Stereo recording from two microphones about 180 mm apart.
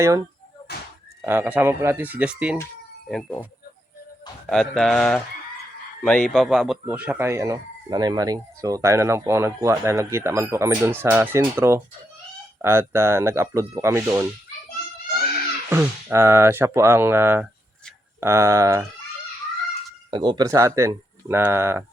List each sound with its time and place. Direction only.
1.2 s speech: 10° right (ahead or behind)
3.1 s speech: 5° left (ahead or behind)
4.4 s speech: centre (ahead or behind); by 14.3 s 15° right (ahead or behind)
15.7 s speech: 10° right (ahead or behind)
20.1 s speech: 25° right (ahead or behind)